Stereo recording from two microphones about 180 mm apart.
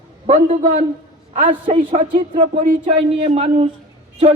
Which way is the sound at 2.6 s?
45° right (ahead or behind).